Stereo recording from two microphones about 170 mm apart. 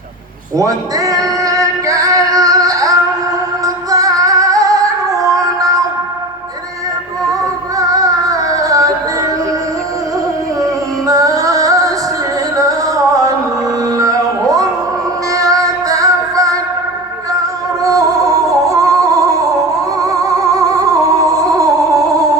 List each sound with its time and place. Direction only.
0.5 s male singing: 20° right (ahead or behind)
3.9 s female singing: 20° right (ahead or behind)
7.8 s music: 20° right (ahead or behind)
11.0 s music: 20° right (ahead or behind)
17.8 s music: 20° right (ahead or behind)